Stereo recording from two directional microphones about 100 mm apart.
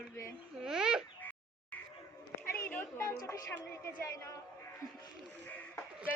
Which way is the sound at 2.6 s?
20° left (ahead or behind).